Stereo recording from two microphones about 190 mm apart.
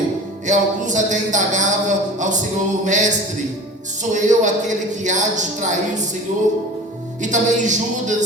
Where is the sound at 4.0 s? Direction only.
40° right (ahead or behind).